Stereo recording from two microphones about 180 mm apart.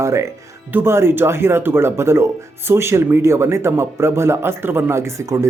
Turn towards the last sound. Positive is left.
turn(degrees=-15)  # may be behind; listen again after turning